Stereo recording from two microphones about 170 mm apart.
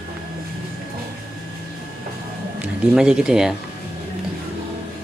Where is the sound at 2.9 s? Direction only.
5° right (ahead or behind).